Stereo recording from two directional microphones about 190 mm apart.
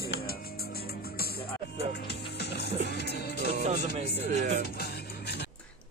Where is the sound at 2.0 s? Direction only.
60° left (ahead or behind).